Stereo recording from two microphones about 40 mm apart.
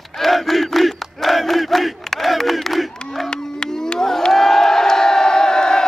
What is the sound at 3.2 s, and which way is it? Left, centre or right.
Crowd, centre.